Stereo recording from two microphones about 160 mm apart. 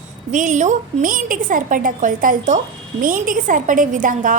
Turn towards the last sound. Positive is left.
turn(degrees=-55)  # may be behind; listen again after turning